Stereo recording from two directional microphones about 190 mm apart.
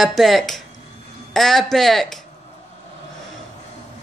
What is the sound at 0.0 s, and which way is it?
Speech, centre (ahead or behind).